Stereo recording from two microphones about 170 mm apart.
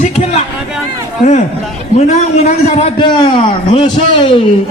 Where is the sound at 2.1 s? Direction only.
40° left (ahead or behind).